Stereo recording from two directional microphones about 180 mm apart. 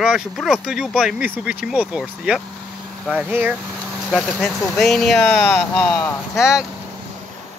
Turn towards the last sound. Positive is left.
turn(degrees=15)  # may be behind; listen again after turning